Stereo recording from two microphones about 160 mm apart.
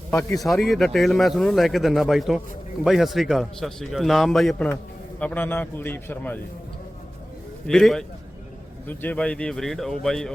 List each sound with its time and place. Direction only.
0.1 s a man's voice: 15° left (ahead or behind)
0.4 s a man's voice: centre (ahead or behind)
7.7 s a man's voice: 5° left (ahead or behind)